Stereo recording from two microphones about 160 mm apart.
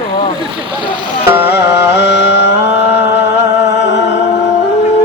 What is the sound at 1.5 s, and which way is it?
Carnatic music, 90° left.